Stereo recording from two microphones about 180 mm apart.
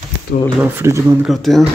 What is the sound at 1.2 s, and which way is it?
Speech, centre (ahead or behind).